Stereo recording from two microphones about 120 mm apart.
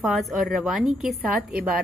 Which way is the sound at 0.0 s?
Centre (ahead or behind).